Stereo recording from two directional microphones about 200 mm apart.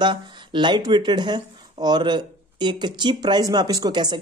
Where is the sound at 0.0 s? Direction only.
25° right (ahead or behind).